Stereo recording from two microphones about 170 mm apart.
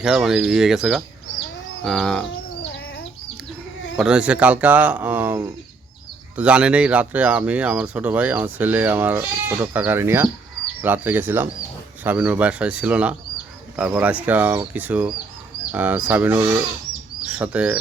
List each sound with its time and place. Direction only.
0.0 s speech: centre (ahead or behind)
3.9 s speech: 5° right (ahead or behind)